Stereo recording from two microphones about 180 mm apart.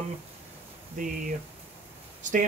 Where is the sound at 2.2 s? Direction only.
45° right (ahead or behind).